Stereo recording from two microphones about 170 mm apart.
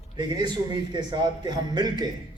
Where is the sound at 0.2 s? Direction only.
25° right (ahead or behind).